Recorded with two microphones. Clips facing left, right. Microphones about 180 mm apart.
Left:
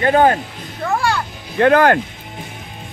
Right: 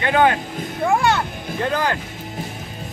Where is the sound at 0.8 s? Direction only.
20° right (ahead or behind).